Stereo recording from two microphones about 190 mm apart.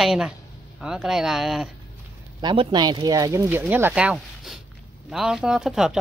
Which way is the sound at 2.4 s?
25° right (ahead or behind).